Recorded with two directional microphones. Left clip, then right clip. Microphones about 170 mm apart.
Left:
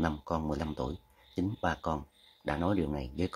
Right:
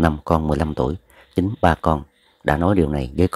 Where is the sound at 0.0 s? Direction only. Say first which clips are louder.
Right 14 dB; 45° right (ahead or behind).